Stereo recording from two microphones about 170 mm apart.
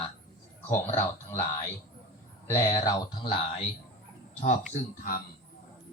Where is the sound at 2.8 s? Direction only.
25° left (ahead or behind).